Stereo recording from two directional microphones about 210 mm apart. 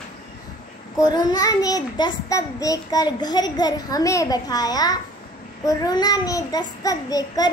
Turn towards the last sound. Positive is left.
turn(degrees=15)  # may be behind; listen again after turning